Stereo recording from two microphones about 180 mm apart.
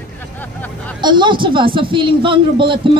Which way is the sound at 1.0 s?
25° right (ahead or behind).